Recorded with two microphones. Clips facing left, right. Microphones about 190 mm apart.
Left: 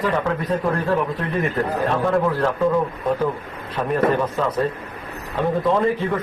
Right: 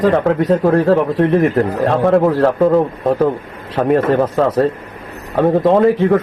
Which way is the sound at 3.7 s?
80° right.